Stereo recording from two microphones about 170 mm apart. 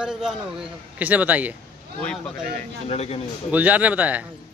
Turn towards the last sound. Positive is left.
turn(degrees=-10)  # may be behind; listen again after turning